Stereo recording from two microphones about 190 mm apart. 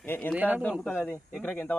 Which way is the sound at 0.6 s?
5° left (ahead or behind).